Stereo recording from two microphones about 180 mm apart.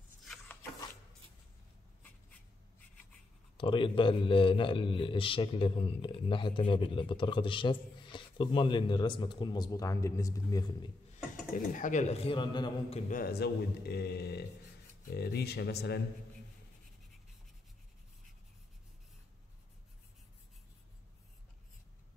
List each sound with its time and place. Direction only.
0.2 s a sound: centre (ahead or behind)
3.5 s a man's voice: 25° left (ahead or behind)
11.5 s a man's voice: 45° left (ahead or behind); by 13.0 s 25° left (ahead or behind)
13.1 s speech: 60° left (ahead or behind)